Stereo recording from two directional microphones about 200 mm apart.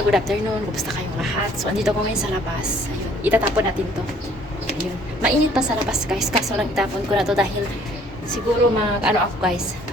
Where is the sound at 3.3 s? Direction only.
10° right (ahead or behind).